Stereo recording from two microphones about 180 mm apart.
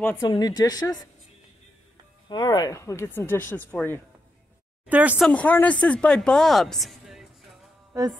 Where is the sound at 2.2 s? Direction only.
25° left (ahead or behind).